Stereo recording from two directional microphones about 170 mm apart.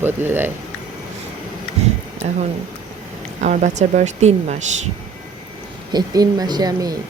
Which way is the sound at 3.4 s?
45° right (ahead or behind).